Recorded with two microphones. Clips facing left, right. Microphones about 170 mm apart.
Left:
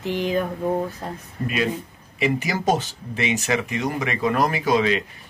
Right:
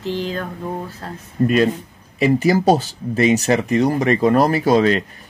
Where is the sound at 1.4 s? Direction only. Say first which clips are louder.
Right 8 dB; 45° right (ahead or behind).